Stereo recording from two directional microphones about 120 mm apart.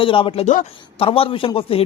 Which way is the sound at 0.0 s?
45° left (ahead or behind).